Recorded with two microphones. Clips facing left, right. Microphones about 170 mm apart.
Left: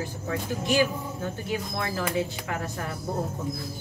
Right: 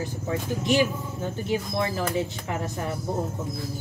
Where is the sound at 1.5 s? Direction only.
20° right (ahead or behind).